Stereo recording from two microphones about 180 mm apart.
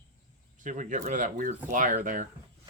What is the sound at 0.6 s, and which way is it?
Speech, 45° right (ahead or behind).